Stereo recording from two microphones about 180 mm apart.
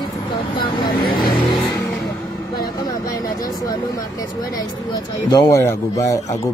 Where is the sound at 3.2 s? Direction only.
20° left (ahead or behind).